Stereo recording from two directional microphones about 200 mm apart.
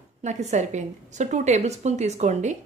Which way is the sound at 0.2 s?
35° right (ahead or behind).